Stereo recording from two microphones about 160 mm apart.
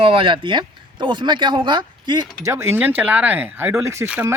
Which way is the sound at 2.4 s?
15° right (ahead or behind).